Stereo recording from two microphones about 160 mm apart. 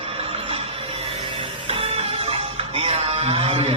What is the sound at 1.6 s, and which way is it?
Music, 35° right (ahead or behind).